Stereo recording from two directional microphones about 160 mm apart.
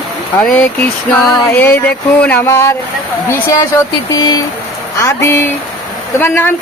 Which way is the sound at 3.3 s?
20° left (ahead or behind).